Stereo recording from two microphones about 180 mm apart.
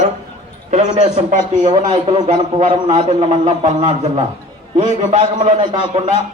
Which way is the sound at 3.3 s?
40° right (ahead or behind).